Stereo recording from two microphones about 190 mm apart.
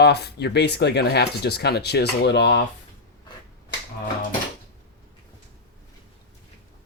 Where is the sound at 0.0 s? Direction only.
60° left (ahead or behind).